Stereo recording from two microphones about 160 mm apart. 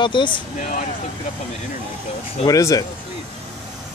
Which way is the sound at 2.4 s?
20° left (ahead or behind).